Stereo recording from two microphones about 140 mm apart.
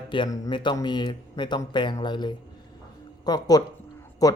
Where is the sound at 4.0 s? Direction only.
25° left (ahead or behind).